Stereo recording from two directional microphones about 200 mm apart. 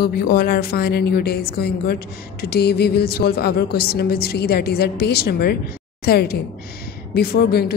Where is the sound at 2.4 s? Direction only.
50° left (ahead or behind).